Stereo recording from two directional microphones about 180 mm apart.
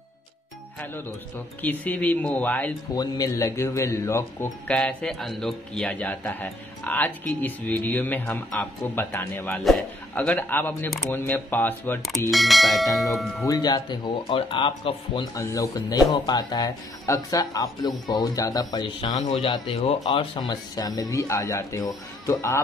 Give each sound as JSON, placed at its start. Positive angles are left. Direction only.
{"t": 1.6, "sound": "speech", "side_deg": 10}
{"t": 12.3, "sound": "speech", "side_deg": 0}
{"t": 13.5, "sound": "speech", "side_deg": 20}